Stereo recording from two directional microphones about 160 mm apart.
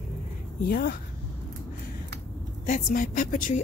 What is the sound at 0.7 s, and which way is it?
Speech, 65° left (ahead or behind).